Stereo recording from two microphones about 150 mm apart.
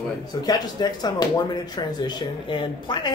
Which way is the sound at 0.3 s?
25° left (ahead or behind).